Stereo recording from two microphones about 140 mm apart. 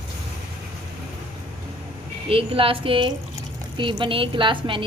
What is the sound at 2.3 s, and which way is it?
A woman's voice, 40° right (ahead or behind).